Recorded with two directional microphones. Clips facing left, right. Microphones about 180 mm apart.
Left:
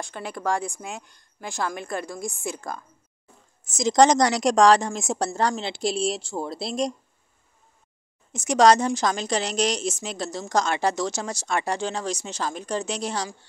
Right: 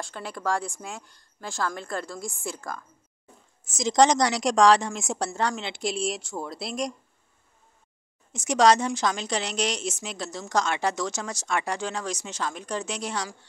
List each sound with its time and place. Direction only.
0.0 s a woman's voice: 15° left (ahead or behind)
3.7 s a woman's voice: 45° left (ahead or behind); by 6.9 s 30° left (ahead or behind)
8.3 s a woman's voice: 45° left (ahead or behind)